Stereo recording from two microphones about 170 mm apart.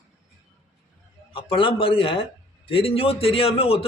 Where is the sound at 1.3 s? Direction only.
30° left (ahead or behind).